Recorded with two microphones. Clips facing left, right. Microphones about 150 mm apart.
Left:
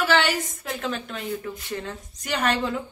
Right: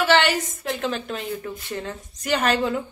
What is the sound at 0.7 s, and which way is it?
A woman's voice, centre (ahead or behind).